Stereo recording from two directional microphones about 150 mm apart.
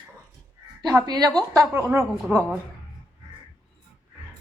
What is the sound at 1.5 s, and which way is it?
Speech, 15° right (ahead or behind).